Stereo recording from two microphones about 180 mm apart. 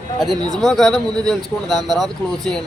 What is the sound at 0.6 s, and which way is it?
Speech, centre (ahead or behind).